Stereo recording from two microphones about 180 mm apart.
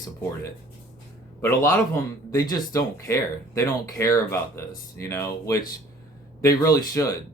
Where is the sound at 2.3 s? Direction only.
20° left (ahead or behind).